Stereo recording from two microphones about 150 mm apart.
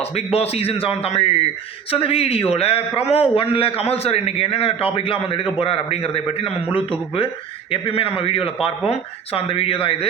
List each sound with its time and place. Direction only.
0.0 s a man's voice: 40° left (ahead or behind)